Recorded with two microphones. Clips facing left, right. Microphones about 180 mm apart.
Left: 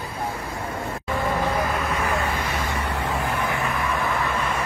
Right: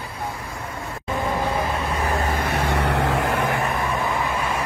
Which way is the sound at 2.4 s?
65° right (ahead or behind).